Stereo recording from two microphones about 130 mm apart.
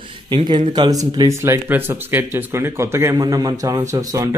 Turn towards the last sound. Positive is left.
turn(degrees=-25)  # may be behind; listen again after turning